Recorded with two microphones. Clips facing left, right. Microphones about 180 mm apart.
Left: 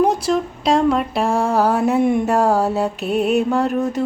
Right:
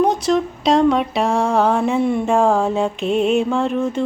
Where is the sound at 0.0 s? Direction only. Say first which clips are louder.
Right 1 dB; 5° left (ahead or behind).